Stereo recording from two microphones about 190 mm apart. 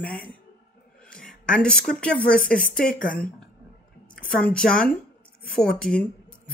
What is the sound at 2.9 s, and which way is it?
Speech, 45° left (ahead or behind).